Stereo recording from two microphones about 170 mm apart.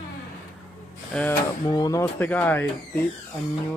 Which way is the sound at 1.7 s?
20° left (ahead or behind).